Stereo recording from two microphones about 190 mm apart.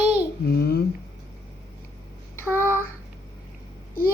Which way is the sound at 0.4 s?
55° left (ahead or behind).